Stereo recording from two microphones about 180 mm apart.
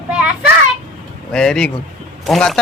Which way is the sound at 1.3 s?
5° left (ahead or behind).